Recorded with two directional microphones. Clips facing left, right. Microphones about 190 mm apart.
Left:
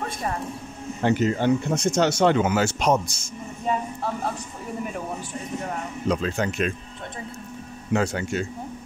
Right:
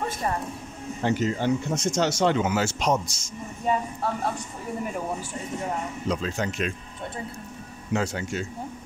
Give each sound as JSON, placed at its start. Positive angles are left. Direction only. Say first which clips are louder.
{"t": 1.0, "sound": "speech", "louder": "left 3 dB", "side_deg": 60}
{"t": 6.0, "sound": "speech", "louder": "left 5 dB", "side_deg": 60}
{"t": 7.9, "sound": "speech", "louder": "left 3 dB", "side_deg": 60}